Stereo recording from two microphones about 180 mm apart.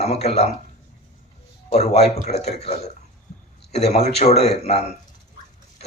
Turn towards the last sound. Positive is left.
turn(degrees=35)  # may be behind; listen again after turning